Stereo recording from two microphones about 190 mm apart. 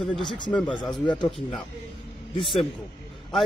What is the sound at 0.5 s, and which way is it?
Speech, 5° left (ahead or behind).